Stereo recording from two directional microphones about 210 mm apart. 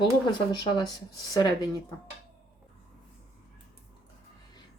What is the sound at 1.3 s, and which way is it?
Speech, 20° left (ahead or behind).